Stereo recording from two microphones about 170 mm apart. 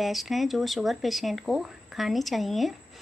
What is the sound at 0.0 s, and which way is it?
A woman's voice, centre (ahead or behind).